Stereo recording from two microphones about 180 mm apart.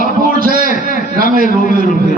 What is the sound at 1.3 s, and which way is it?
Speech, 55° right (ahead or behind).